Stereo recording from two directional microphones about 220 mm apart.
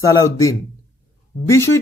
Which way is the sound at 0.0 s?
15° left (ahead or behind).